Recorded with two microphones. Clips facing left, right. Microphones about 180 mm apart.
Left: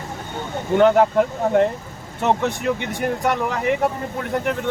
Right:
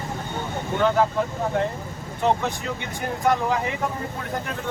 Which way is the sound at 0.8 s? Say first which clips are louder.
Left 6 dB; 65° left (ahead or behind).